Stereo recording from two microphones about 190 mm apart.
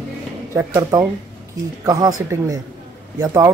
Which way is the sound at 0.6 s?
15° right (ahead or behind).